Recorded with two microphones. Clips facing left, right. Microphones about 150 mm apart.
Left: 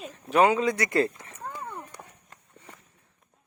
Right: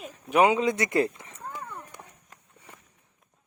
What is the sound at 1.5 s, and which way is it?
Clip-clop, 15° right (ahead or behind).